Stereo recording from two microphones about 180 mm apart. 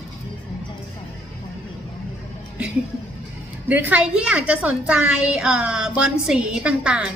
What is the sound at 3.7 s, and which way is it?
A woman's voice, 10° right (ahead or behind).